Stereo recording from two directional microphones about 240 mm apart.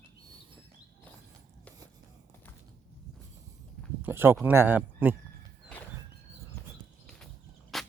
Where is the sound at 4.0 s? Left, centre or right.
Centre.